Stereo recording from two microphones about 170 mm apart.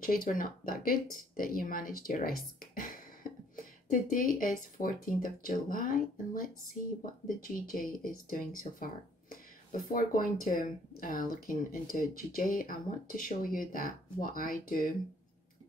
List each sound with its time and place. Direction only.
0.0 s speech: 55° left (ahead or behind)